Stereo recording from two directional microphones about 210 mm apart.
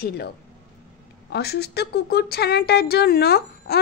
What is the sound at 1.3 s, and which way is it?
A woman's voice, 50° left (ahead or behind).